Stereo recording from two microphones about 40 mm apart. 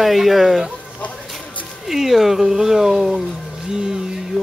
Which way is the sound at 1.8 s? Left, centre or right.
Centre.